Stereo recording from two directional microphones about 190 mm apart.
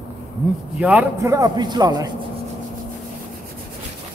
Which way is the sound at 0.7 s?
5° right (ahead or behind).